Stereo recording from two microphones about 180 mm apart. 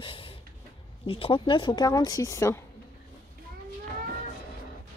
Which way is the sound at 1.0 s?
30° left (ahead or behind).